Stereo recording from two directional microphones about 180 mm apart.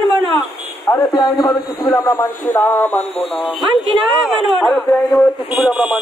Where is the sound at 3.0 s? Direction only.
35° left (ahead or behind).